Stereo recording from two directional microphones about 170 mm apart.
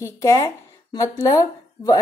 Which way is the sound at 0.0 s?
20° left (ahead or behind).